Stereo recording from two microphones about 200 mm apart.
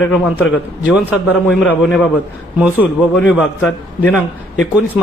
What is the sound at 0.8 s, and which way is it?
Speech, 5° right (ahead or behind).